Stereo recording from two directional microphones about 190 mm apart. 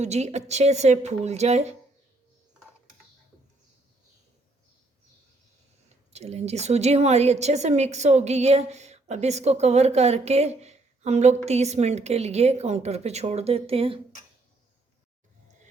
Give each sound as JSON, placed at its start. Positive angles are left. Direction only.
{"t": 0.0, "sound": "a woman's voice", "side_deg": -35}
{"t": 6.1, "sound": "a woman's voice", "side_deg": -35}